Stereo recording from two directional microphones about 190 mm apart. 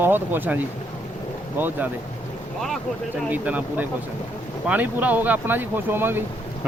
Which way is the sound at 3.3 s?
10° right (ahead or behind).